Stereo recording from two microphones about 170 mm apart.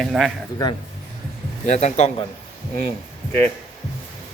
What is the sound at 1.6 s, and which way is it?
Speech, 45° left (ahead or behind).